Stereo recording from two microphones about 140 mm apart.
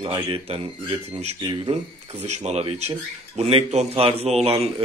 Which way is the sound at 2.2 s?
55° right (ahead or behind).